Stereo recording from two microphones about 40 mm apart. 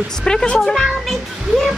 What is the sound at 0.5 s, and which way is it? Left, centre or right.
Speech, centre.